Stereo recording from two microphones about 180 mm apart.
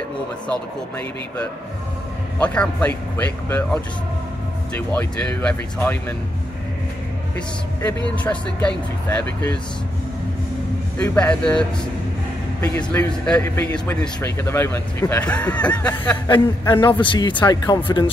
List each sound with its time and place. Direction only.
0.5 s a man's voice: 5° left (ahead or behind)
8.2 s a man's voice: 10° left (ahead or behind)
11.0 s speech: 5° left (ahead or behind)
12.9 s a man's voice: 10° left (ahead or behind)
16.3 s a man's voice: 25° left (ahead or behind)